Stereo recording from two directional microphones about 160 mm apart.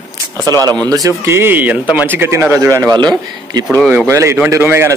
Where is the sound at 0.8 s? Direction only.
20° right (ahead or behind).